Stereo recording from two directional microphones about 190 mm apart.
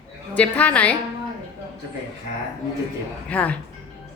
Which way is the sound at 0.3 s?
5° left (ahead or behind).